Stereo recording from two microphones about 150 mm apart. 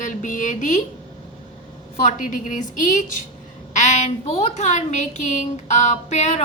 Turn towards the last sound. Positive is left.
turn(degrees=50)  # may be behind; listen again after turning